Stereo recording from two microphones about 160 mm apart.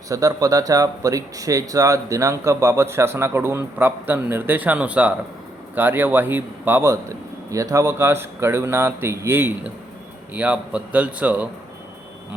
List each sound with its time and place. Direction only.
0.1 s speech: 20° right (ahead or behind)